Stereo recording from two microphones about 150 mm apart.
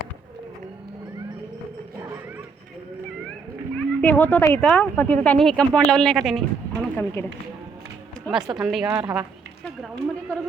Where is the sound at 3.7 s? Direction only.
10° left (ahead or behind).